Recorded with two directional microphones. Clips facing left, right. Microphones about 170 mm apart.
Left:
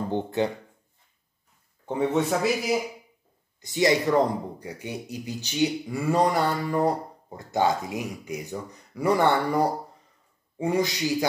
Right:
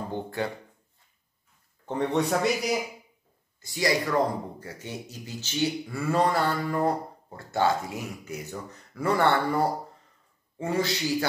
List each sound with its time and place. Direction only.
0.1 s speech: 20° left (ahead or behind)
1.9 s a man's voice: 5° left (ahead or behind)
3.6 s speech: 20° left (ahead or behind)